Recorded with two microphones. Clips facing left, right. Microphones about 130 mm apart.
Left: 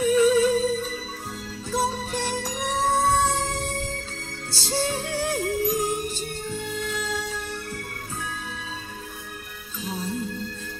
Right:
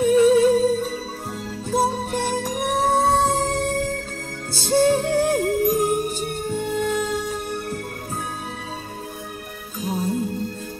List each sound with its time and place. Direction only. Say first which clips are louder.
0.0 s music: right 4 dB; 50° right (ahead or behind)
9.8 s music: right 6 dB; 50° right (ahead or behind)